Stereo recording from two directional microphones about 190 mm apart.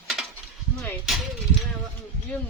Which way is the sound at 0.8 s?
5° left (ahead or behind).